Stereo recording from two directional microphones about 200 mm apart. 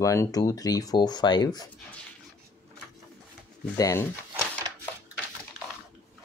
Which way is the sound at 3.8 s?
15° left (ahead or behind).